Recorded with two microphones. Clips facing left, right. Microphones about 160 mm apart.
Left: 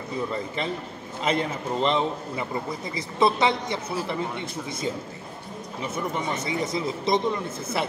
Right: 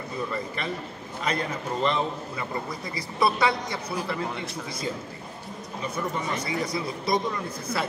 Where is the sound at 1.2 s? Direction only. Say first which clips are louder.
Left 3 dB; 25° left (ahead or behind).